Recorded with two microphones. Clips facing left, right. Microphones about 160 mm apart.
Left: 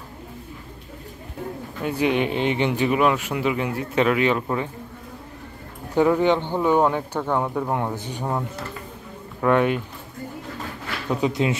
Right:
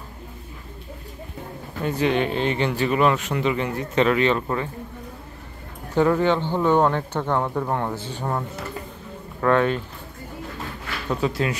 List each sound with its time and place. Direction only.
1.8 s speech: 10° left (ahead or behind)
5.9 s speech: 15° left (ahead or behind)
11.1 s speech: 15° left (ahead or behind)